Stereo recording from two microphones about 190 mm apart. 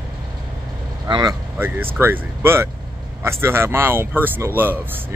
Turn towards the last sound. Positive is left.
turn(degrees=-10)  # may be behind; listen again after turning